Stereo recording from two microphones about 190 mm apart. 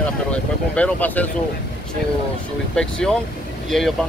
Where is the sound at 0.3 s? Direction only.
5° left (ahead or behind).